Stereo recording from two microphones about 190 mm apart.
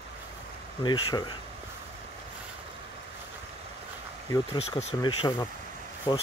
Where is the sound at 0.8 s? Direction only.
25° left (ahead or behind).